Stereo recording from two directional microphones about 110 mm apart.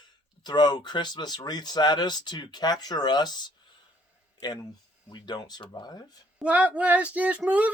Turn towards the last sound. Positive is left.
turn(degrees=-10)  # may be behind; listen again after turning